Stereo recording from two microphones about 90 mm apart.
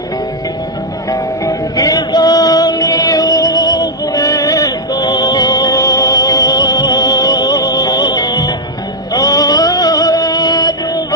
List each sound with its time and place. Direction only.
1.1 s music: 40° left (ahead or behind)